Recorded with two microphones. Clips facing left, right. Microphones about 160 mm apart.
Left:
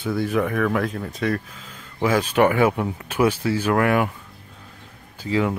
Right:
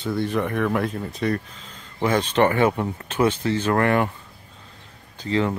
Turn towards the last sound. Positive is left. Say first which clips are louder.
# left 1 dB
turn(degrees=5)  # may be behind; listen again after turning